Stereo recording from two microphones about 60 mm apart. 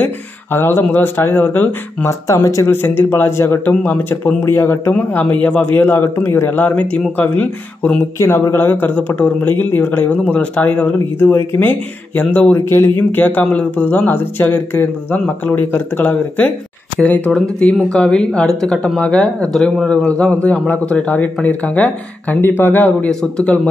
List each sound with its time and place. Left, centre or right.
0.0 s speech: left
2.0 s speech: left
2.6 s speech: left
3.6 s speech: left
4.4 s speech: left
4.9 s speech: left
5.7 s speech: left
6.5 s speech: left
8.2 s speech: left
12.2 s speech: left
12.5 s speech: left
22.4 s speech: left; by 23.5 s centre